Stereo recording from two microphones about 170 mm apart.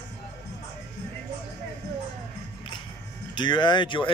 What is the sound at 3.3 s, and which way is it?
Speech, 25° left (ahead or behind).